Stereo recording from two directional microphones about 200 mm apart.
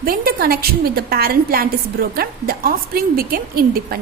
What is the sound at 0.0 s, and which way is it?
A woman's voice, 45° right (ahead or behind).